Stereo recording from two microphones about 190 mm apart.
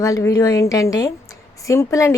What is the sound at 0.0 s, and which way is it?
A woman's voice, 15° left (ahead or behind).